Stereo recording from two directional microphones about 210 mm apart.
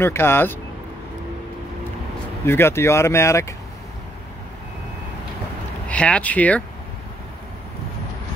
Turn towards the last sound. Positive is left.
turn(degrees=5)  # may be behind; listen again after turning